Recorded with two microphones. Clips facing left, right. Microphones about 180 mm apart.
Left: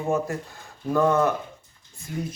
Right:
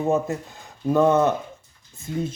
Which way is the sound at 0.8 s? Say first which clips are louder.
Right 3 dB; 20° right (ahead or behind).